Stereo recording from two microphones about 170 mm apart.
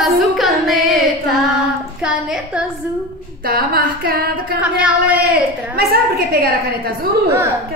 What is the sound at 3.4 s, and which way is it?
A woman's voice, 65° right (ahead or behind).